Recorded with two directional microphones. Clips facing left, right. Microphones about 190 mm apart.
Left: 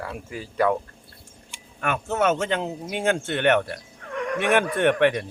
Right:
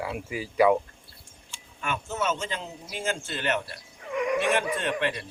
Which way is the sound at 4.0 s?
10° right (ahead or behind).